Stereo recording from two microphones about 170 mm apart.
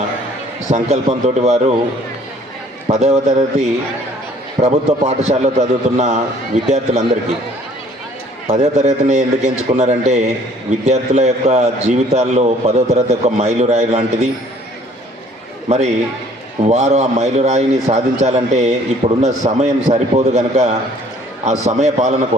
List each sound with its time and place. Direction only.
0.7 s a man's voice: 40° right (ahead or behind)
2.8 s a man's voice: 40° right (ahead or behind)
8.4 s a man's voice: 40° right (ahead or behind)
15.7 s a man's voice: 40° right (ahead or behind)